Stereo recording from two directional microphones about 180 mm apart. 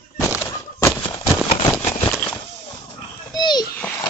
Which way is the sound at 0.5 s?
25° left (ahead or behind).